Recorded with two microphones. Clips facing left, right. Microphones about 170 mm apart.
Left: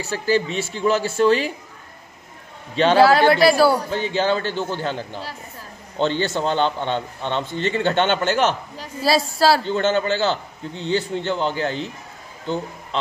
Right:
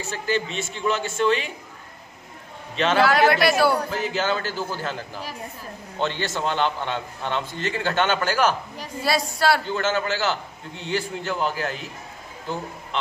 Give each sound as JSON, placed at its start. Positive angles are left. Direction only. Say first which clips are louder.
{"t": 0.0, "sound": "a man's voice", "louder": "left 5 dB", "side_deg": 35}
{"t": 2.7, "sound": "a man's voice", "louder": "left 5 dB", "side_deg": 35}